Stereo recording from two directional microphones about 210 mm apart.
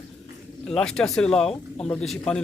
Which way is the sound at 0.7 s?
5° left (ahead or behind).